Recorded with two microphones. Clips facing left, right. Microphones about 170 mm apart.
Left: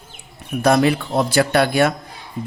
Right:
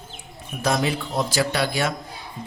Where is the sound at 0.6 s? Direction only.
60° left (ahead or behind).